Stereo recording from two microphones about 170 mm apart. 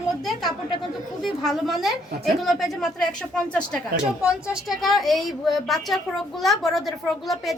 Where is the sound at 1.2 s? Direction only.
Centre (ahead or behind).